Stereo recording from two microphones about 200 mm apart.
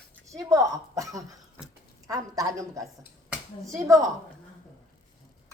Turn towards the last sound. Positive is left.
turn(degrees=-15)  # may be behind; listen again after turning